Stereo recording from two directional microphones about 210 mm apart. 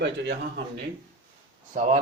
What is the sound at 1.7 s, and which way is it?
Speech, 35° right (ahead or behind).